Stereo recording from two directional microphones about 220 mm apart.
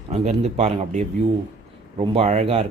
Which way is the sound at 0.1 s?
30° right (ahead or behind).